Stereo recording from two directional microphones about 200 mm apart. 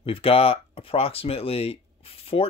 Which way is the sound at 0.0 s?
25° left (ahead or behind).